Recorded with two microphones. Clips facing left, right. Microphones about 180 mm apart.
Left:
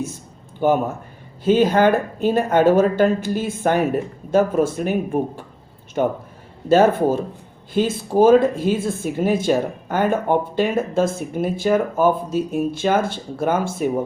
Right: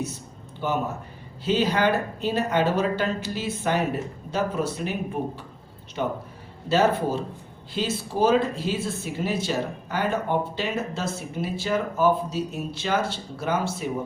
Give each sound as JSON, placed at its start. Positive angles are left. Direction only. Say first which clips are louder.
{"t": 0.6, "sound": "speech", "louder": "left 8 dB", "side_deg": 50}